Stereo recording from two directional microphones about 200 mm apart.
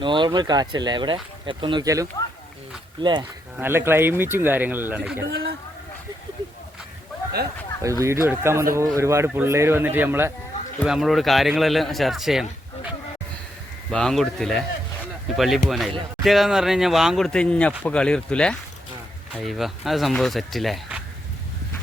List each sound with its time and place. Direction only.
0.0 s speech: 25° right (ahead or behind)
3.6 s speech: 10° right (ahead or behind)
5.3 s speech: 50° right (ahead or behind)
7.8 s speech: 15° right (ahead or behind)
13.9 s speech: 5° left (ahead or behind)